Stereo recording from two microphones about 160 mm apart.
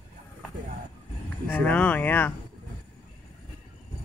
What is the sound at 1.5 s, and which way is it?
Speech, 10° left (ahead or behind).